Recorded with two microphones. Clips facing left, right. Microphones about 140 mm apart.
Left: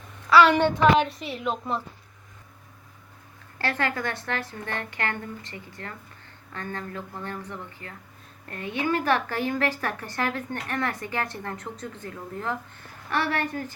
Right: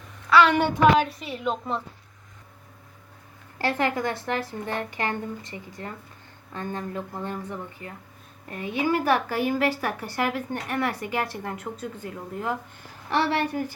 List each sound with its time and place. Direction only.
0.3 s a sound: centre (ahead or behind)
0.8 s a woman's voice: centre (ahead or behind)
3.6 s a woman's voice: 15° right (ahead or behind)